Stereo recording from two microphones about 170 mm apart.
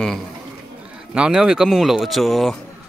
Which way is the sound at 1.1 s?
5° right (ahead or behind).